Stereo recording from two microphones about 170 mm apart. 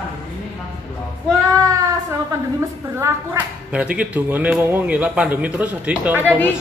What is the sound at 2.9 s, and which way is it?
Speech, 15° right (ahead or behind).